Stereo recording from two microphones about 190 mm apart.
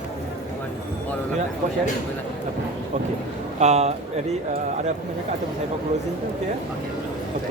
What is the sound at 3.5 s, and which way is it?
Speech, 35° right (ahead or behind).